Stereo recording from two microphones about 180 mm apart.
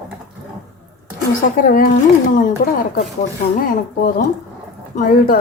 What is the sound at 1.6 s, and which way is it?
A woman's voice, 50° left (ahead or behind).